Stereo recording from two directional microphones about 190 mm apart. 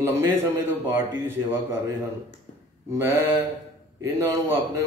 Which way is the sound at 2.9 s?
15° right (ahead or behind).